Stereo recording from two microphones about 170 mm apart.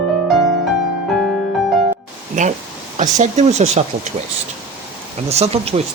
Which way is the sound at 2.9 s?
45° right (ahead or behind).